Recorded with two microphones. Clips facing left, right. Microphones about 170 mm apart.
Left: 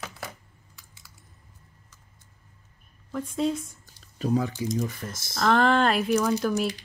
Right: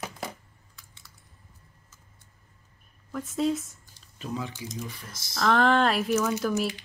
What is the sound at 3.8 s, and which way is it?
Speech, 40° left (ahead or behind).